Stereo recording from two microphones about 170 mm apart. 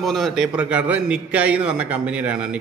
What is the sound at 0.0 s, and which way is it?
A man's voice, centre (ahead or behind).